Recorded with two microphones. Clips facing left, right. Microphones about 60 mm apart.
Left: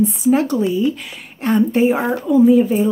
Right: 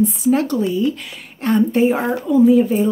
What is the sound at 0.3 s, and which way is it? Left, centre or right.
Speech, centre.